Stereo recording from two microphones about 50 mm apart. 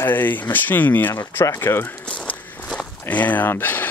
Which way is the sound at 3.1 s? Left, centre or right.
Left.